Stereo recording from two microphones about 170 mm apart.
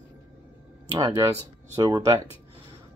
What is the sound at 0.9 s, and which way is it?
Speech, 20° right (ahead or behind).